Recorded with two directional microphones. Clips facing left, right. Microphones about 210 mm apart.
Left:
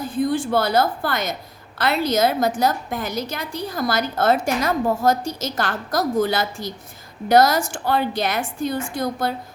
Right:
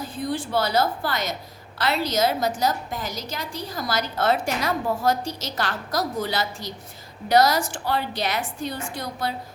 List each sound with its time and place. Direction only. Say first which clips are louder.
0.1 s a woman's voice: left 7 dB; 50° left (ahead or behind)